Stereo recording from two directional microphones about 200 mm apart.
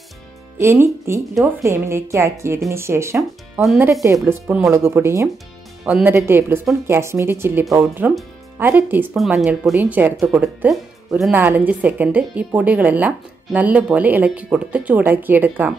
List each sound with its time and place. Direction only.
0.6 s speech: 10° right (ahead or behind)
3.9 s speech: 15° right (ahead or behind)